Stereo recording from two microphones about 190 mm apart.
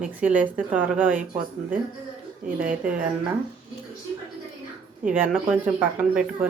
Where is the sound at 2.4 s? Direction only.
45° right (ahead or behind).